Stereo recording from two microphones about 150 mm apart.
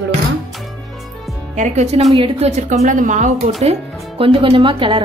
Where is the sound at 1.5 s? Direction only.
55° right (ahead or behind).